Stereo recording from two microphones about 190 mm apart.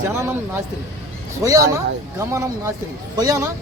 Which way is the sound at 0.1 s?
10° right (ahead or behind).